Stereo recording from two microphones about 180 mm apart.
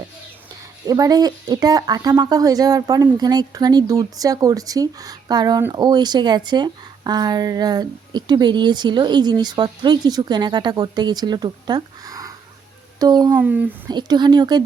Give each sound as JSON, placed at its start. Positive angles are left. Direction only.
{"t": 0.9, "sound": "speech", "side_deg": -20}
{"t": 13.3, "sound": "speech", "side_deg": -10}
{"t": 13.8, "sound": "speech", "side_deg": -25}